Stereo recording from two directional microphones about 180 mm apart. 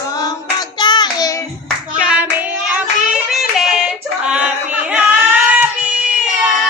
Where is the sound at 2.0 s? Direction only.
5° right (ahead or behind).